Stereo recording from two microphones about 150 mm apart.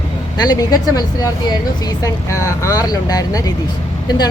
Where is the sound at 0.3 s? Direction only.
25° left (ahead or behind).